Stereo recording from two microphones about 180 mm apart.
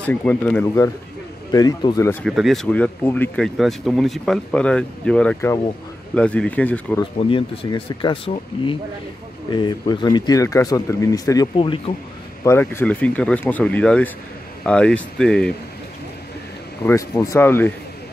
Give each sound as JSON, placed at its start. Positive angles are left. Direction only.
{"t": 0.0, "sound": "speech", "side_deg": 10}
{"t": 2.2, "sound": "speech", "side_deg": 0}
{"t": 7.2, "sound": "speech", "side_deg": 30}
{"t": 12.4, "sound": "speech", "side_deg": 15}
{"t": 16.8, "sound": "speech", "side_deg": 15}